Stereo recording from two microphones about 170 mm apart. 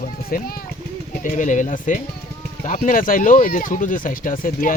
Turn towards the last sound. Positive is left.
turn(degrees=55)  # may be behind; listen again after turning